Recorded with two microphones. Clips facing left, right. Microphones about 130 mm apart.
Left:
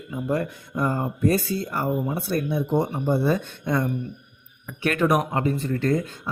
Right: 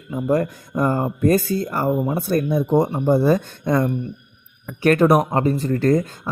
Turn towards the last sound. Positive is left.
turn(degrees=-40)  # may be behind; listen again after turning